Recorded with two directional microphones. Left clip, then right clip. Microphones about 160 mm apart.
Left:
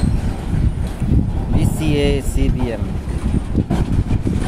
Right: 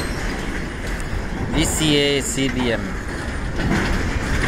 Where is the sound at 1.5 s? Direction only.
35° left (ahead or behind).